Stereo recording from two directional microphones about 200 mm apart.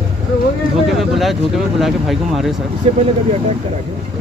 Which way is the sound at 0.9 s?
Centre (ahead or behind).